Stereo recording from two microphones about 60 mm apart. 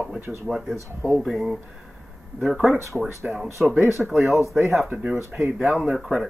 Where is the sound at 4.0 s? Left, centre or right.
Centre.